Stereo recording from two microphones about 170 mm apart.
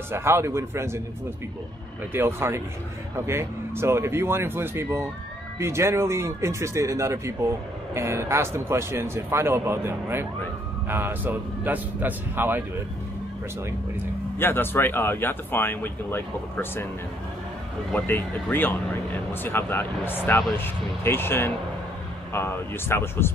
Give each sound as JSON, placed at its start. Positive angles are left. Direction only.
{"t": 0.1, "sound": "a man's voice", "side_deg": -15}
{"t": 2.1, "sound": "a man's voice", "side_deg": -15}
{"t": 14.4, "sound": "speech", "side_deg": 10}
{"t": 17.9, "sound": "speech", "side_deg": 15}